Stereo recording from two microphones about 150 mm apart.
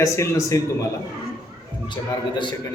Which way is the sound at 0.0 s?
20° left (ahead or behind).